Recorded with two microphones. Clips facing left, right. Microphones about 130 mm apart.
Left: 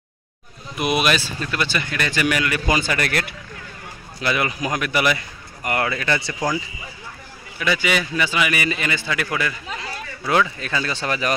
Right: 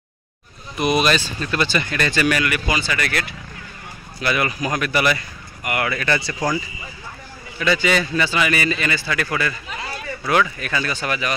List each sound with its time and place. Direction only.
0.7 s speech: 5° left (ahead or behind)
2.7 s speech: 45° left (ahead or behind)
4.2 s speech: 20° left (ahead or behind)
5.6 s speech: 35° left (ahead or behind)
5.9 s a man's voice: 20° left (ahead or behind)
7.5 s a man's voice: 10° left (ahead or behind); by 11.3 s 35° left (ahead or behind)